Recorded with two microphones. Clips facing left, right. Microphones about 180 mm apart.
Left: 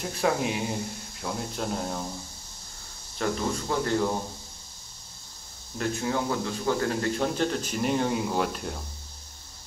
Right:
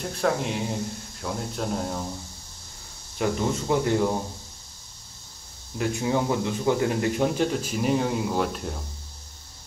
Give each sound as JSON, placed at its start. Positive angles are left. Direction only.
{"t": 0.0, "sound": "speech", "side_deg": 5}
{"t": 3.2, "sound": "speech", "side_deg": -15}
{"t": 5.8, "sound": "speech", "side_deg": -15}